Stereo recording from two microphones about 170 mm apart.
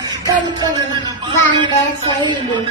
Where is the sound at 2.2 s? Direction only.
25° right (ahead or behind).